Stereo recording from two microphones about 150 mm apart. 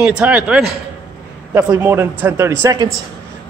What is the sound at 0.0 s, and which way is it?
A man's voice, 5° right (ahead or behind).